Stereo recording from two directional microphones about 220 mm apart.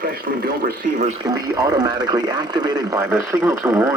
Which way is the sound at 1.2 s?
15° right (ahead or behind).